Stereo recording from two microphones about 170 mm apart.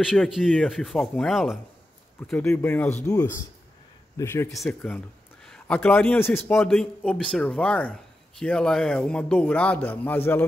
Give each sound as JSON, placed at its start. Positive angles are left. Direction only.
{"t": 0.0, "sound": "speech", "side_deg": 0}
{"t": 4.5, "sound": "a man's voice", "side_deg": 5}
{"t": 6.7, "sound": "speech", "side_deg": 0}